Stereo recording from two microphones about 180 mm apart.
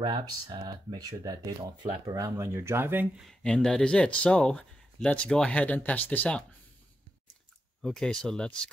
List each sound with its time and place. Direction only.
0.0 s speech: 25° right (ahead or behind)
3.3 s speech: 5° left (ahead or behind)
7.8 s speech: 5° left (ahead or behind)